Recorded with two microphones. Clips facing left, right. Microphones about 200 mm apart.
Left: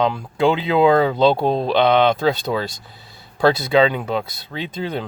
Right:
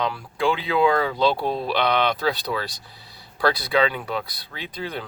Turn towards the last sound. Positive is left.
turn(degrees=25)  # may be behind; listen again after turning